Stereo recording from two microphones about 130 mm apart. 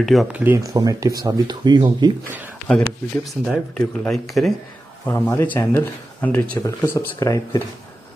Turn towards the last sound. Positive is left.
turn(degrees=25)  # may be behind; listen again after turning